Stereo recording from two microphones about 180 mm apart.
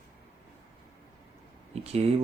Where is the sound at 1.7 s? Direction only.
35° right (ahead or behind).